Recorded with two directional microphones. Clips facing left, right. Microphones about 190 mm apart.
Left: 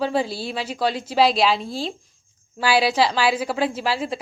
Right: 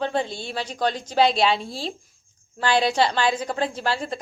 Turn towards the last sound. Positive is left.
turn(degrees=5)  # may be behind; listen again after turning